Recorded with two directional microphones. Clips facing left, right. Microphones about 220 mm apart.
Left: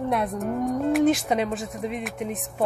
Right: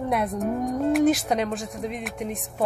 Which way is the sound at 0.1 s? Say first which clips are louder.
Right 3 dB; centre (ahead or behind).